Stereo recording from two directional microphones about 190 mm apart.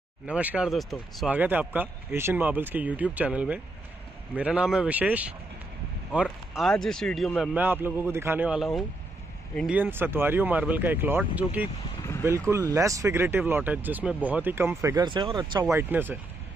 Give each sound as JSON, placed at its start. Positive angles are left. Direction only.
{"t": 0.3, "sound": "speech", "side_deg": -5}
{"t": 7.5, "sound": "speech", "side_deg": -10}
{"t": 15.7, "sound": "speech", "side_deg": -10}